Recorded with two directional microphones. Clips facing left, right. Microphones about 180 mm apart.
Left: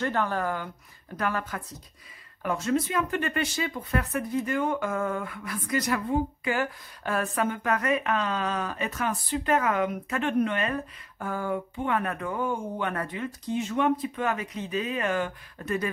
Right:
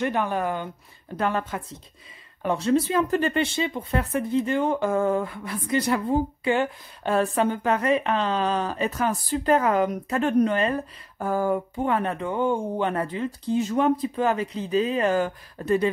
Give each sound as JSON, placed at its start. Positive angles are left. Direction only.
{"t": 0.0, "sound": "speech", "side_deg": -15}